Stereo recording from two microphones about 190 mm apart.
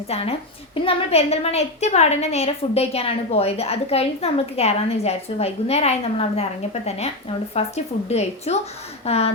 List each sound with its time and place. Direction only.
0.1 s a woman's voice: 30° left (ahead or behind)